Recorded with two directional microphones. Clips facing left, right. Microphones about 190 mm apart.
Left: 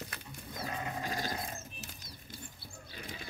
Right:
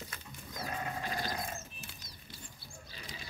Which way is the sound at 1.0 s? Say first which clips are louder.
Left 1 dB; 45° left (ahead or behind).